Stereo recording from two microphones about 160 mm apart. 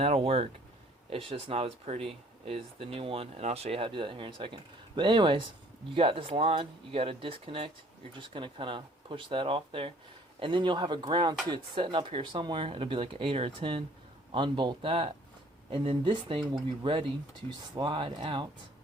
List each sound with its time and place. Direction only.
0.0 s speech: 35° right (ahead or behind)